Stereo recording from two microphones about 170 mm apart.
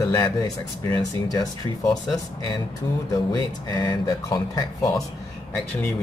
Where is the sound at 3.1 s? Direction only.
20° left (ahead or behind).